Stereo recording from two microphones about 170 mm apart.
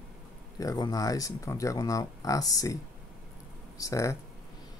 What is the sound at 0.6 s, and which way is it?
Speech, 20° left (ahead or behind).